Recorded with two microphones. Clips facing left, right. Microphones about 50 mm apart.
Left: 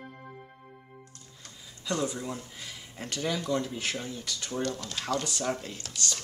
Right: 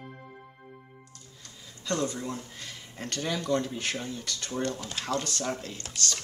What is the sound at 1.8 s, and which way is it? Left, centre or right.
Speech, centre.